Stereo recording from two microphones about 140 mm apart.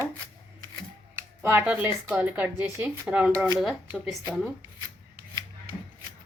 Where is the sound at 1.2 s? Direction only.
10° right (ahead or behind).